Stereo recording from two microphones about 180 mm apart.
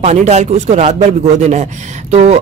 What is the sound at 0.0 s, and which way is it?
Speech, 40° right (ahead or behind).